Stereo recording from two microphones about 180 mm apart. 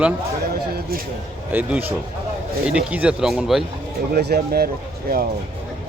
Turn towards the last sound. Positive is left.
turn(degrees=-55)  # may be behind; listen again after turning